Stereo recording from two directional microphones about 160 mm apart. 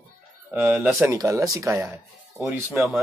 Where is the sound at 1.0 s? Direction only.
20° right (ahead or behind).